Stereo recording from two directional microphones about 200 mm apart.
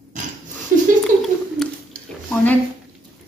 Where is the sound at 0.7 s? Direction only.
45° right (ahead or behind).